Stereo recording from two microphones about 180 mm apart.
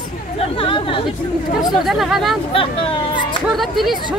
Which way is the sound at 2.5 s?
30° left (ahead or behind).